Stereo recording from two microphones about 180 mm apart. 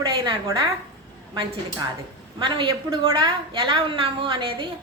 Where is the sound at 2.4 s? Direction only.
25° right (ahead or behind).